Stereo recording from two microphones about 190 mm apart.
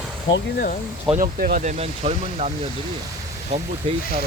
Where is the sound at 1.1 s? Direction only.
45° right (ahead or behind).